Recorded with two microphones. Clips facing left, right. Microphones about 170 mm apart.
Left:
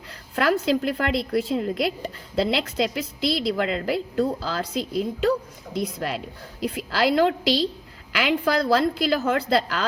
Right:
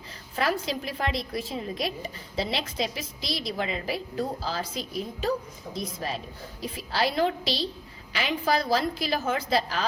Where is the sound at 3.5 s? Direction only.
80° left.